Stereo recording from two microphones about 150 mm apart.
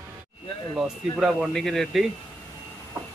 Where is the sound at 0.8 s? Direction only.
Centre (ahead or behind).